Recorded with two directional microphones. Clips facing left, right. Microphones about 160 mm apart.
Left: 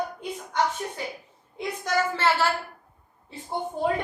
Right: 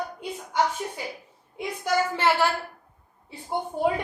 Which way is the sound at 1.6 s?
10° right (ahead or behind).